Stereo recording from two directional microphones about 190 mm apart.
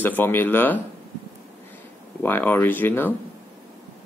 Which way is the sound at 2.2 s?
10° left (ahead or behind).